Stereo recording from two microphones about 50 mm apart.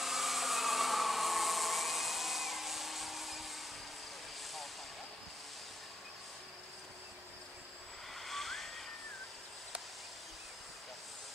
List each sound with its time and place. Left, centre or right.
0.0 s hair dryer: centre
8.2 s vehicle: centre